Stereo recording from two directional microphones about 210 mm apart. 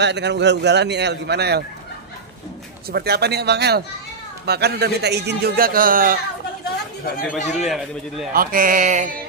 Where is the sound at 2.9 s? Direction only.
50° right (ahead or behind).